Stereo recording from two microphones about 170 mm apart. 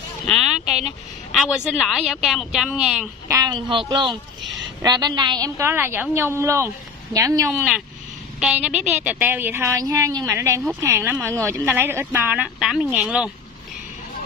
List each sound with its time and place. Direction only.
0.3 s a sound: centre (ahead or behind)
1.3 s speech: centre (ahead or behind)
3.3 s speech: 20° right (ahead or behind)
8.4 s speech: 5° right (ahead or behind)